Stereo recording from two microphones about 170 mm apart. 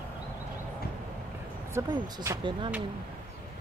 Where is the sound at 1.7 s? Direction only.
15° right (ahead or behind).